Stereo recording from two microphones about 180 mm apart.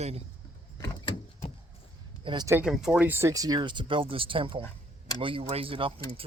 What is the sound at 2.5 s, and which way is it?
A man's voice, 10° right (ahead or behind).